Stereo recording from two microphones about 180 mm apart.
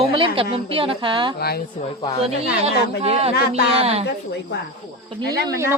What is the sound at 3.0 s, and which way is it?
Speech, 35° right (ahead or behind).